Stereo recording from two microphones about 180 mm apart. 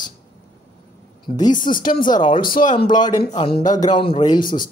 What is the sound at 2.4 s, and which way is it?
Speech, 50° left (ahead or behind).